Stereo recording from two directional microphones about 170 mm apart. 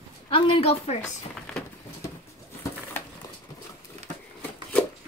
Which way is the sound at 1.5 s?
5° left (ahead or behind).